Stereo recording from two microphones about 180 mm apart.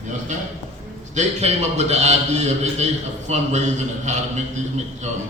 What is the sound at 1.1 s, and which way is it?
A man's voice, 40° right (ahead or behind).